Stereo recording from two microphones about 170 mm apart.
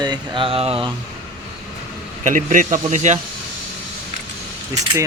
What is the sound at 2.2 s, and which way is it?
Speech, 50° right (ahead or behind).